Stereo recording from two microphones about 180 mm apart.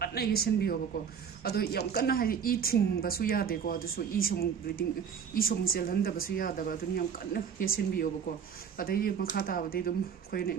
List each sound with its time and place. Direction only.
0.0 s speech: 60° left (ahead or behind)